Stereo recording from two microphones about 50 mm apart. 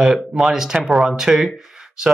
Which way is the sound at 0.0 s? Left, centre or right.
Centre.